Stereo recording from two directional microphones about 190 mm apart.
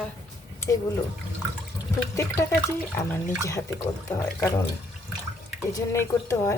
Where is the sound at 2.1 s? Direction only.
15° left (ahead or behind).